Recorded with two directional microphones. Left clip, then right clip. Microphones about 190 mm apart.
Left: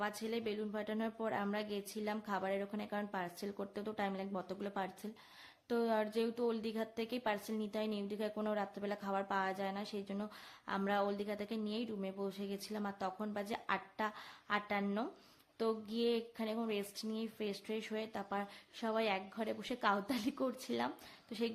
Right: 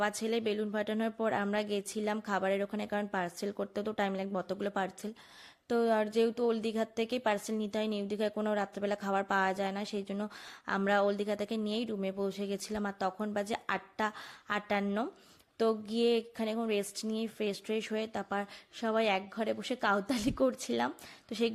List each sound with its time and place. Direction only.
0.0 s speech: 35° right (ahead or behind)